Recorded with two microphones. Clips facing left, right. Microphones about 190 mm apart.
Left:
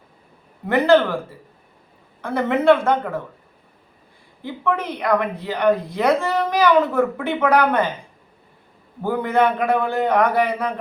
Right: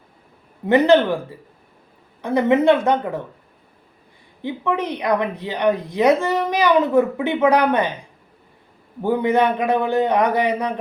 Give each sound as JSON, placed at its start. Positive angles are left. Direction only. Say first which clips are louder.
{"t": 0.7, "sound": "speech", "louder": "right 2 dB", "side_deg": -20}
{"t": 2.2, "sound": "a woman's voice", "louder": "right 1 dB", "side_deg": -15}
{"t": 4.4, "sound": "a woman's voice", "louder": "right 1 dB", "side_deg": -20}
{"t": 9.0, "sound": "a woman's voice", "louder": "right 1 dB", "side_deg": -20}